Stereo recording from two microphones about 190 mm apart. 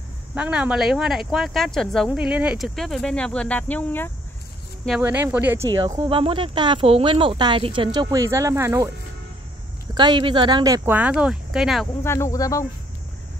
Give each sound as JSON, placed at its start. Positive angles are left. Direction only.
{"t": 0.3, "sound": "speech", "side_deg": -5}
{"t": 4.8, "sound": "speech", "side_deg": -5}
{"t": 5.7, "sound": "speech", "side_deg": -20}
{"t": 9.9, "sound": "speech", "side_deg": -25}
{"t": 12.0, "sound": "speech", "side_deg": 15}